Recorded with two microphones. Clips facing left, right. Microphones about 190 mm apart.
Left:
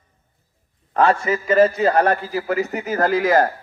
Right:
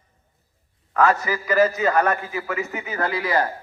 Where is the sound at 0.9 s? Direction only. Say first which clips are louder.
Left 2 dB; 30° left (ahead or behind); by 3.5 s 45° left (ahead or behind).